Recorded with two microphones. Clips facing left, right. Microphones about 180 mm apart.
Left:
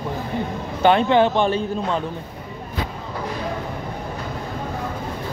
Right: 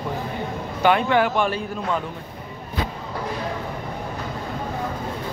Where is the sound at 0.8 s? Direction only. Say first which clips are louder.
Left 3 dB; 25° left (ahead or behind).